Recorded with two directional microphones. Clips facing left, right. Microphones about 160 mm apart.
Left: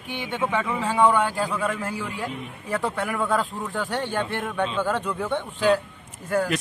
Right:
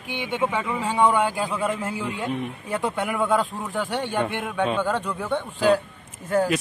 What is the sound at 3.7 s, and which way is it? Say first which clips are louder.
Speech: right 2 dB; 10° right (ahead or behind).